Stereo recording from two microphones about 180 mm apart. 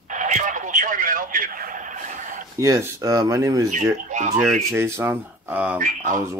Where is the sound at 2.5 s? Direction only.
20° right (ahead or behind).